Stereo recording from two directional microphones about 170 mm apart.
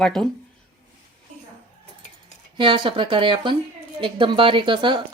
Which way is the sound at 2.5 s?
30° right (ahead or behind).